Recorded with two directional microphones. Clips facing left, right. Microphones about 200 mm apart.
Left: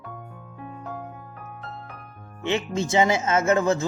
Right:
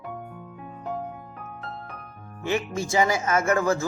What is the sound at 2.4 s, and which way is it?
Speech, 20° left (ahead or behind).